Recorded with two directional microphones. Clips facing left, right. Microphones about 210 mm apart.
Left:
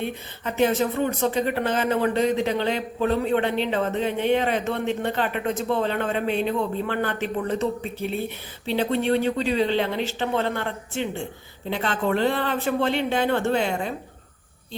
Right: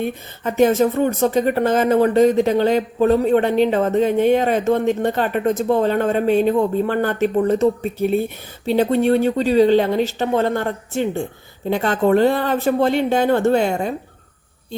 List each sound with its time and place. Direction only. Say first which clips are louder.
0.0 s speech: right 6 dB; 45° right (ahead or behind)